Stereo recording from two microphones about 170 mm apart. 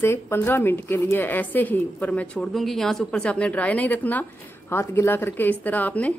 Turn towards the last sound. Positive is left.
turn(degrees=10)  # may be behind; listen again after turning